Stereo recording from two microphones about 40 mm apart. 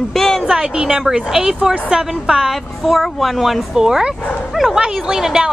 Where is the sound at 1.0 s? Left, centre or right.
Centre.